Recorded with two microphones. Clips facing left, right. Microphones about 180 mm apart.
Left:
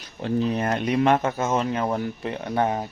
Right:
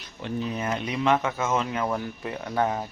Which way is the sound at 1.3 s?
35° left (ahead or behind).